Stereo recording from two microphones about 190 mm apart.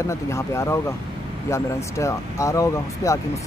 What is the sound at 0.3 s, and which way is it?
Speech, 15° left (ahead or behind).